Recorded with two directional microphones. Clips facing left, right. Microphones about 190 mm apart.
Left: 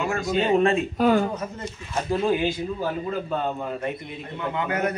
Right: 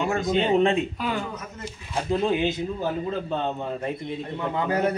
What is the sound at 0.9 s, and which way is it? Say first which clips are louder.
Speech: left 9 dB; 45° left (ahead or behind).